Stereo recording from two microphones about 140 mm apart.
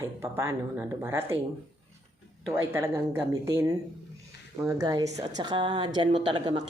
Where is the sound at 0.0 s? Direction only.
20° right (ahead or behind).